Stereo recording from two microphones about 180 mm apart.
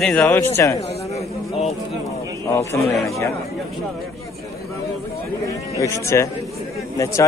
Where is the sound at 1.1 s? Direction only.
35° left (ahead or behind).